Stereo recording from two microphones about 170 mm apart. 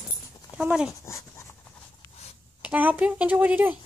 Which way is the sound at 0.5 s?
5° right (ahead or behind).